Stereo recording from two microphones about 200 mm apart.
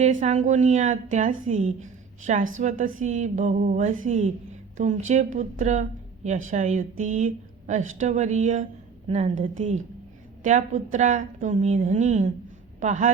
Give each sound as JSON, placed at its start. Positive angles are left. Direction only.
{"t": 0.0, "sound": "a woman's voice", "side_deg": -40}